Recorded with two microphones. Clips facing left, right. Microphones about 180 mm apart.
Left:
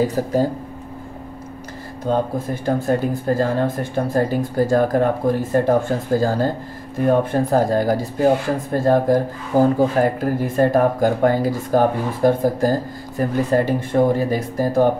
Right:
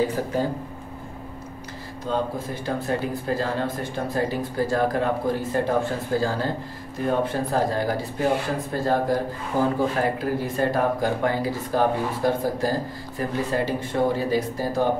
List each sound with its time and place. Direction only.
0.0 s speech: 40° left (ahead or behind)
2.0 s speech: 50° left (ahead or behind)